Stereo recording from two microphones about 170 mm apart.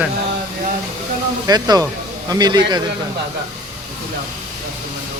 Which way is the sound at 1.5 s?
25° right (ahead or behind).